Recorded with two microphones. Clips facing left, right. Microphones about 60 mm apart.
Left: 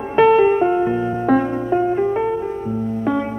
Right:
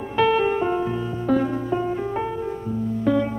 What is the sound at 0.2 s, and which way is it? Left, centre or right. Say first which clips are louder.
Music: left 7 dB; left.